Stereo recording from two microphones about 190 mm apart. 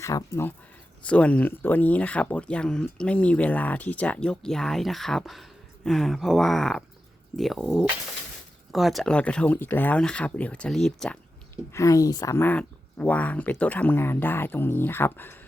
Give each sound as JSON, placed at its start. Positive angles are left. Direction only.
{"t": 0.0, "sound": "speech", "side_deg": 15}